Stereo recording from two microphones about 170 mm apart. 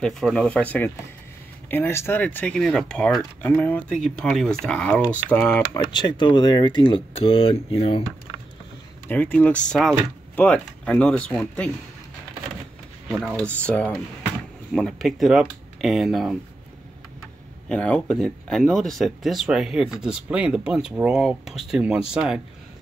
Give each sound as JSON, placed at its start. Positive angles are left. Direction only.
{"t": 0.0, "sound": "speech", "side_deg": 5}
{"t": 5.9, "sound": "speech", "side_deg": 25}
{"t": 9.0, "sound": "speech", "side_deg": 10}
{"t": 13.1, "sound": "speech", "side_deg": -5}
{"t": 13.5, "sound": "speech", "side_deg": 10}
{"t": 17.6, "sound": "speech", "side_deg": 5}